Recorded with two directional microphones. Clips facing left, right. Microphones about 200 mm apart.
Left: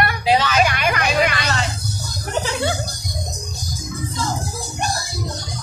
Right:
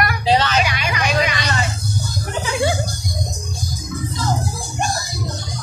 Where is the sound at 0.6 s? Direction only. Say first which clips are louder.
Left 2 dB; 55° left (ahead or behind).